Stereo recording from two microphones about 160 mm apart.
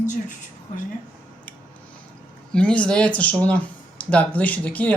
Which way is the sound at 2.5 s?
5° left (ahead or behind).